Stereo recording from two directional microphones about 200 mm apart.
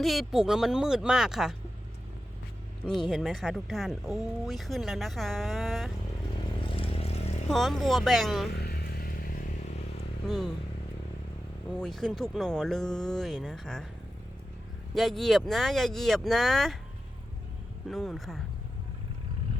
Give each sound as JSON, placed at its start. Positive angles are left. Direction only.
{"t": 0.0, "sound": "speech", "side_deg": 0}
{"t": 2.8, "sound": "speech", "side_deg": 0}
{"t": 6.7, "sound": "vehicle", "side_deg": 30}
{"t": 7.5, "sound": "speech", "side_deg": 0}
{"t": 8.5, "sound": "a sound", "side_deg": 50}
{"t": 10.2, "sound": "speech", "side_deg": 0}
{"t": 11.8, "sound": "speech", "side_deg": 5}
{"t": 14.9, "sound": "speech", "side_deg": 0}
{"t": 17.8, "sound": "speech", "side_deg": 0}